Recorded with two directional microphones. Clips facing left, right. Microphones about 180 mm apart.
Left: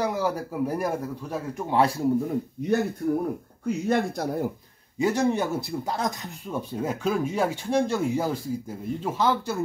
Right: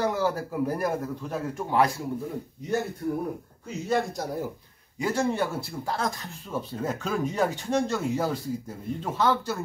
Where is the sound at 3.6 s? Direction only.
55° left (ahead or behind).